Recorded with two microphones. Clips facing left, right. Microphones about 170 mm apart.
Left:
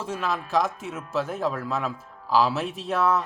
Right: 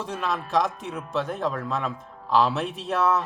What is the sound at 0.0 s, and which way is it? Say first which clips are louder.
Speech: even; centre (ahead or behind).